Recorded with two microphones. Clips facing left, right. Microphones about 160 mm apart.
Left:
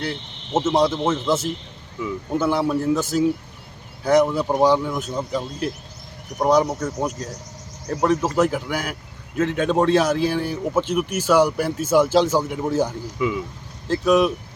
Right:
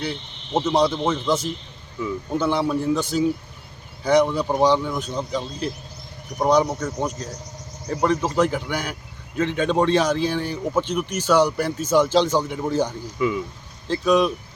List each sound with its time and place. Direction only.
0.5 s a man's voice: 5° left (ahead or behind)
2.0 s a man's voice: 5° left (ahead or behind)